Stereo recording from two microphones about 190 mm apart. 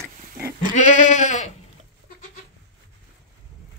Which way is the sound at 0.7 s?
40° left (ahead or behind).